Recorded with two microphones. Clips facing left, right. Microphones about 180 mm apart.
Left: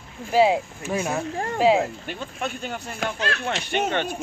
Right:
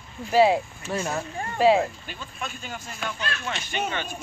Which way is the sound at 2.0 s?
60° left (ahead or behind).